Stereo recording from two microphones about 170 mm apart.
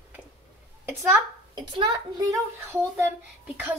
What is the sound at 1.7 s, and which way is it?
Speech, 25° right (ahead or behind).